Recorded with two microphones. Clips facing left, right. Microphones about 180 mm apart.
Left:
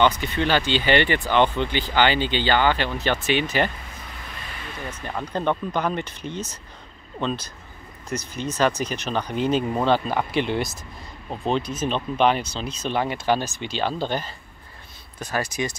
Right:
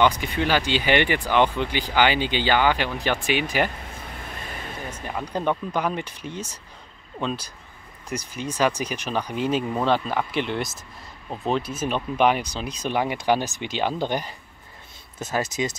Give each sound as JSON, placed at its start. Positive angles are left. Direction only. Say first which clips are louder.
{"t": 0.0, "sound": "speech", "louder": "left 1 dB", "side_deg": -10}
{"t": 4.4, "sound": "a sound", "louder": "right 1 dB", "side_deg": -45}
{"t": 5.0, "sound": "speech", "louder": "left 1 dB", "side_deg": -5}